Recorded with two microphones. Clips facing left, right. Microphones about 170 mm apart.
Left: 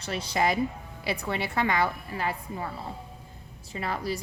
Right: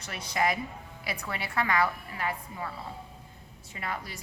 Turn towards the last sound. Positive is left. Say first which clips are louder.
# left 7 dB
turn(degrees=35)  # may be behind; listen again after turning